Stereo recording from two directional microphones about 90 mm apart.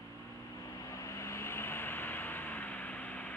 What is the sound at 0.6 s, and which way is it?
Vehicle, 40° left (ahead or behind).